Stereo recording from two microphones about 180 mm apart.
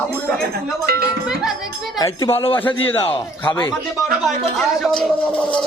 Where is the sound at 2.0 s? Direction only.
15° left (ahead or behind).